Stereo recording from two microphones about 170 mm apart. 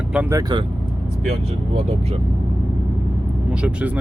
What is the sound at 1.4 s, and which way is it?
Speech, 35° right (ahead or behind).